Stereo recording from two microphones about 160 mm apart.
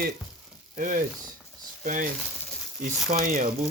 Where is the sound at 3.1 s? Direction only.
55° right (ahead or behind).